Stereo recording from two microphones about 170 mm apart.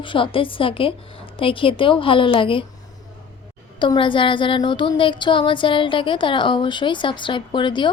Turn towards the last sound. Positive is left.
turn(degrees=25)  # may be behind; listen again after turning